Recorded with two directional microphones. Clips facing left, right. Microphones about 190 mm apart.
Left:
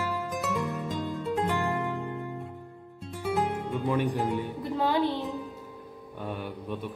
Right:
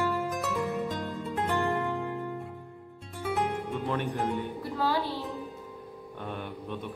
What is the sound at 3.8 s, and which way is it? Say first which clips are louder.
Mantra: left 4 dB; 10° left (ahead or behind).